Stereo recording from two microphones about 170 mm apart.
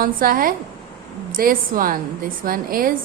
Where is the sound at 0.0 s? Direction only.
60° right (ahead or behind).